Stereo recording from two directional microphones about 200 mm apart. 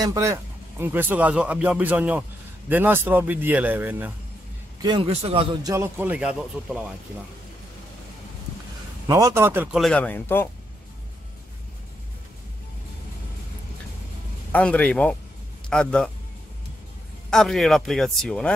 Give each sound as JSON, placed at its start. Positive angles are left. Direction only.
{"t": 0.0, "sound": "speech", "side_deg": -15}
{"t": 4.8, "sound": "a man's voice", "side_deg": -25}
{"t": 9.0, "sound": "speech", "side_deg": -15}
{"t": 9.8, "sound": "speech", "side_deg": 5}
{"t": 14.5, "sound": "speech", "side_deg": 5}
{"t": 17.3, "sound": "speech", "side_deg": 0}